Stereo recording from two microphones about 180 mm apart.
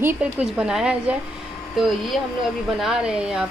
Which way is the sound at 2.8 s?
5° right (ahead or behind).